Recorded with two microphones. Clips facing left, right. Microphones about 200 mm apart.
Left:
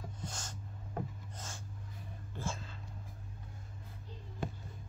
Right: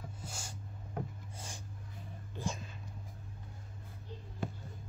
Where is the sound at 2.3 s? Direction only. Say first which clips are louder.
Right 2 dB; 15° right (ahead or behind).